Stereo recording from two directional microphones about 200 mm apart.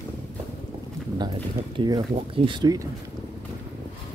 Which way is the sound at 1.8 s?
20° right (ahead or behind).